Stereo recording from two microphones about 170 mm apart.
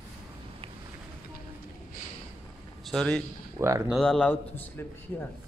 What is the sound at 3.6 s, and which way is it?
Speech, 15° right (ahead or behind).